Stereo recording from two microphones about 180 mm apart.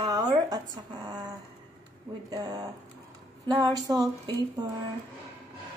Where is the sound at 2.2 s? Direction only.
20° right (ahead or behind).